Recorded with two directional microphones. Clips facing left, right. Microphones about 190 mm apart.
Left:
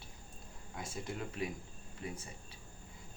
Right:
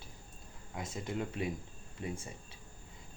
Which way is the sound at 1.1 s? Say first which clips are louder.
Right 4 dB; 25° right (ahead or behind).